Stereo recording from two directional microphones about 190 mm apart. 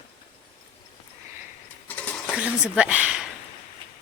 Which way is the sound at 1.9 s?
5° left (ahead or behind).